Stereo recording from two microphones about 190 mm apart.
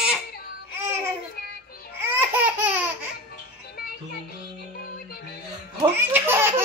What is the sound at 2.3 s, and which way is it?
Laughter, 10° right (ahead or behind).